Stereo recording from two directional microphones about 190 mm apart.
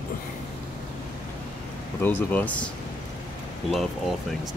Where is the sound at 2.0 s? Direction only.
10° left (ahead or behind).